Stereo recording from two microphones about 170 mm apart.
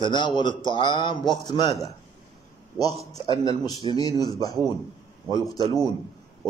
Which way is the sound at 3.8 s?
30° right (ahead or behind).